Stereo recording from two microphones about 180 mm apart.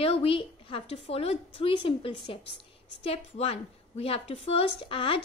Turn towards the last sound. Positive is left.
turn(degrees=30)  # may be behind; listen again after turning